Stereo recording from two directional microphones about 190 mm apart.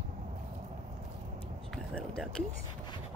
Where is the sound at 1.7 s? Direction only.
5° left (ahead or behind).